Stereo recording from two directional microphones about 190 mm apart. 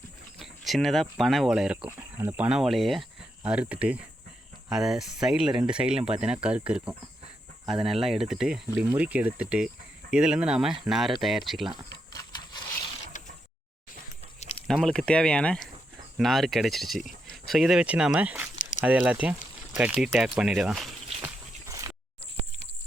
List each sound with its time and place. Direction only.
0.3 s speech: centre (ahead or behind)
14.7 s speech: 5° left (ahead or behind)
21.7 s a sound: 15° right (ahead or behind)